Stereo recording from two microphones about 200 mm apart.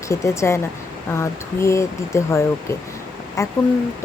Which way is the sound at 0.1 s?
15° left (ahead or behind).